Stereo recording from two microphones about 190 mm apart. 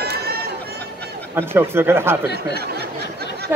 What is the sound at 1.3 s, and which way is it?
Speech, 10° right (ahead or behind).